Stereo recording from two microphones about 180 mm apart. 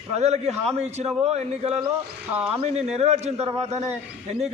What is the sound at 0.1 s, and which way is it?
A man's voice, 35° right (ahead or behind).